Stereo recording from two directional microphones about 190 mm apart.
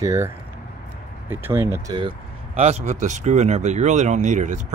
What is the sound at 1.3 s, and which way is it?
Speech, 10° right (ahead or behind).